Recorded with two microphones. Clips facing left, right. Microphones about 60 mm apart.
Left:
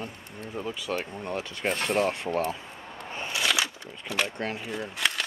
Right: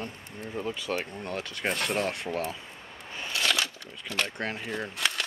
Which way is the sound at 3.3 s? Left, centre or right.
Centre.